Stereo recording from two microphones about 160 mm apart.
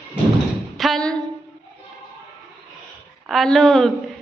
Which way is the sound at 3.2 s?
Centre (ahead or behind).